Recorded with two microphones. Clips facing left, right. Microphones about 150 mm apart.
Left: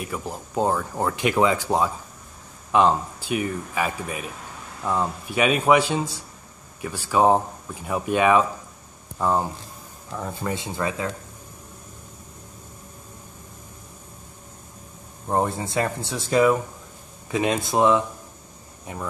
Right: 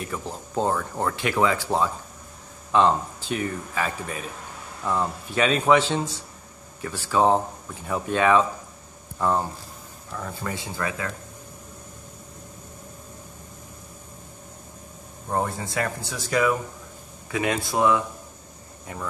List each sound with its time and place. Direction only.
0.0 s speech: 10° left (ahead or behind)
10.1 s speech: 20° left (ahead or behind)
15.2 s speech: 25° left (ahead or behind)